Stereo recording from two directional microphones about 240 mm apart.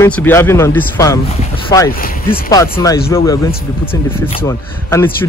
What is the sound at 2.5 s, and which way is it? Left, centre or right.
Speech, centre.